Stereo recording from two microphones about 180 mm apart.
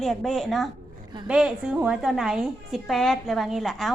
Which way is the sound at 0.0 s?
Centre (ahead or behind).